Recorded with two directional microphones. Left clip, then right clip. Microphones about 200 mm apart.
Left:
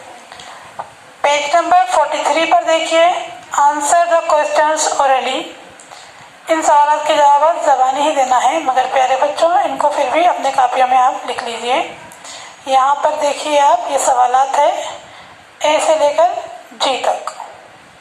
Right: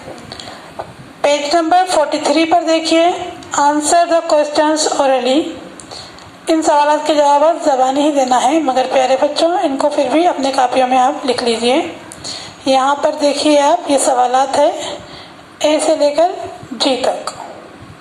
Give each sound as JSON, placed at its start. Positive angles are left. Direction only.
{"t": 1.2, "sound": "a woman's voice", "side_deg": -45}
{"t": 6.5, "sound": "a woman's voice", "side_deg": -50}